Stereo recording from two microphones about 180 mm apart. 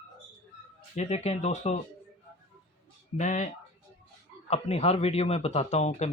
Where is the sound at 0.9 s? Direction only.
35° left (ahead or behind).